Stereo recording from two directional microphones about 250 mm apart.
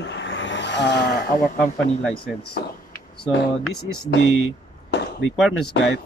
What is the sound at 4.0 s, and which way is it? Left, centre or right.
Speech, left.